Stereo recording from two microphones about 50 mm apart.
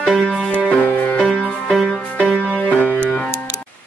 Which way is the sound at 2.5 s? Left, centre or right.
Left.